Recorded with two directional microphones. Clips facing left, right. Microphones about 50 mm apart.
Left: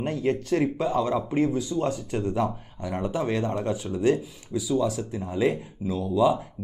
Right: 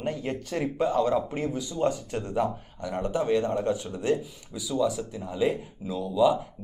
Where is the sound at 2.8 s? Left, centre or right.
Centre.